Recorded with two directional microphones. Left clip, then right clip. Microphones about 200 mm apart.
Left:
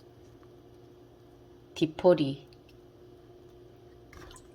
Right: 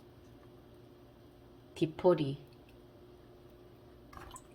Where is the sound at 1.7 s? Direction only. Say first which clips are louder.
Left 5 dB; 15° left (ahead or behind).